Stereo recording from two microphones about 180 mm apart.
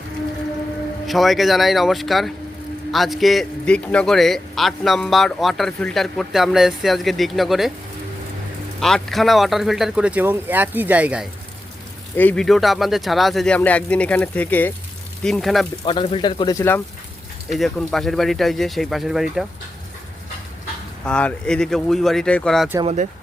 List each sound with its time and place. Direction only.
1.0 s a man's voice: centre (ahead or behind)
8.8 s a man's voice: centre (ahead or behind)
12.1 s a man's voice: 10° left (ahead or behind)
15.8 s speech: 30° left (ahead or behind)
17.5 s a man's voice: centre (ahead or behind)
21.0 s a man's voice: 5° left (ahead or behind)
22.8 s speech: 35° right (ahead or behind)